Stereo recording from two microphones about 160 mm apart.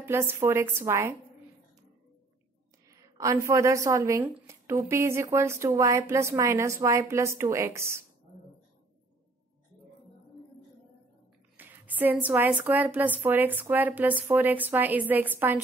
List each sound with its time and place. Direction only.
0.0 s a woman's voice: 15° right (ahead or behind)
2.9 s a woman's voice: 20° right (ahead or behind)
11.5 s a woman's voice: 10° right (ahead or behind)